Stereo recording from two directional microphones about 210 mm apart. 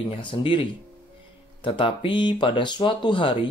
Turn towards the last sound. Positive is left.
turn(degrees=25)  # may be behind; listen again after turning